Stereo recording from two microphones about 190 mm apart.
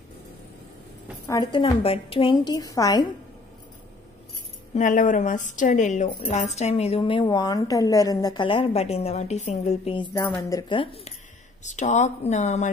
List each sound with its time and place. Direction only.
1.2 s a woman's voice: 20° left (ahead or behind)
4.7 s a woman's voice: 40° left (ahead or behind); by 11.1 s 25° left (ahead or behind)
11.6 s a woman's voice: 40° left (ahead or behind)